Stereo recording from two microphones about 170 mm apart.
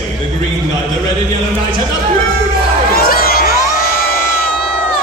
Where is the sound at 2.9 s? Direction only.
60° left (ahead or behind).